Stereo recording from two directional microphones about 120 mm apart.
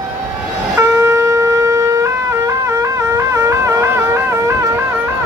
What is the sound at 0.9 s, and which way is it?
Shofar, 25° right (ahead or behind).